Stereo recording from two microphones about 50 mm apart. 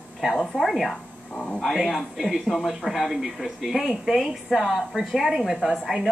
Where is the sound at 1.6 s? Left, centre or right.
Centre.